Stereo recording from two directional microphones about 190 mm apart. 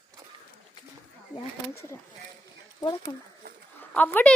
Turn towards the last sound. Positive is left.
turn(degrees=10)  # may be behind; listen again after turning